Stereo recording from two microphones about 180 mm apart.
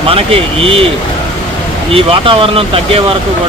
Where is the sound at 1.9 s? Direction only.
30° right (ahead or behind).